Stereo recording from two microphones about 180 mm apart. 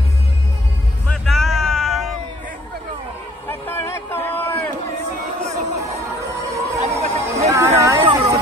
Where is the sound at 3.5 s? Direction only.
10° left (ahead or behind).